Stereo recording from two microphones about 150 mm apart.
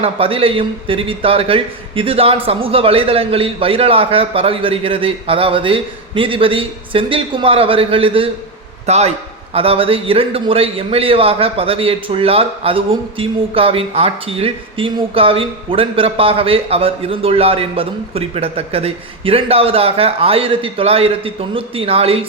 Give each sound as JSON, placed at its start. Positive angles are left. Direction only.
{"t": 0.0, "sound": "a man's voice", "side_deg": -40}